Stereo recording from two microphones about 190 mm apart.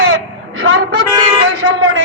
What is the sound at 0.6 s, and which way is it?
Speech, 70° right (ahead or behind).